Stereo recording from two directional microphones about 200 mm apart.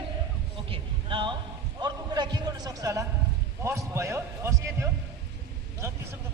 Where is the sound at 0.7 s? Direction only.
25° right (ahead or behind).